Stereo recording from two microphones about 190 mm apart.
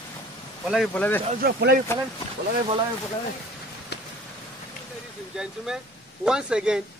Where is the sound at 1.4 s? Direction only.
55° right (ahead or behind).